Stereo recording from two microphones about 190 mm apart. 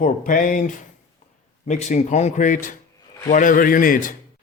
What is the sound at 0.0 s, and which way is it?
A man's voice, 45° left (ahead or behind).